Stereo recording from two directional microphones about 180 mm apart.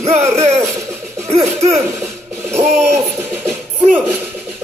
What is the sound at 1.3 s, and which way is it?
Music, 35° right (ahead or behind).